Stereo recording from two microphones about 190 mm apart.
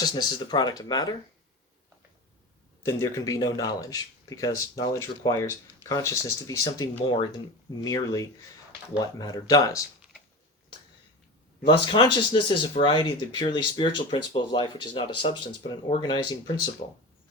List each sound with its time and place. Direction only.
0.0 s speech: 25° left (ahead or behind)
2.8 s speech: 20° left (ahead or behind)
11.6 s speech: 25° left (ahead or behind)
16.8 s speech: 35° left (ahead or behind)